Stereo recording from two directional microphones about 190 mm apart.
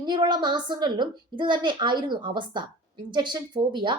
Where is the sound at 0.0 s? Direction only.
25° right (ahead or behind).